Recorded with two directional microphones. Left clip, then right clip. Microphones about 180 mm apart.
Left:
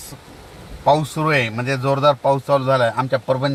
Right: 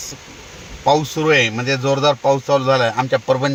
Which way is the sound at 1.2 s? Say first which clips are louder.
Right 4 dB; 40° right (ahead or behind).